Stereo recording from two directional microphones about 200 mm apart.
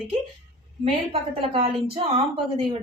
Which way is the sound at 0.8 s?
25° right (ahead or behind).